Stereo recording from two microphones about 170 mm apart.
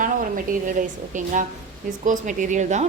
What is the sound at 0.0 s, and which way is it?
A woman's voice, 50° right (ahead or behind).